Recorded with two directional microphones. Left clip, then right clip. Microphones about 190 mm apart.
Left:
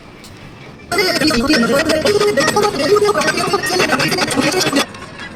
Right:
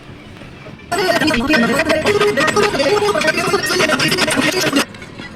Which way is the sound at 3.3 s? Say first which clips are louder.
Even; 10° left (ahead or behind).